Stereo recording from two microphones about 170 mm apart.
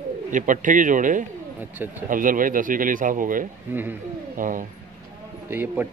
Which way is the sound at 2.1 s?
50° right (ahead or behind).